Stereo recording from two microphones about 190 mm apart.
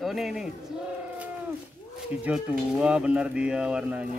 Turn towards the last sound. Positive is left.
turn(degrees=-5)  # may be behind; listen again after turning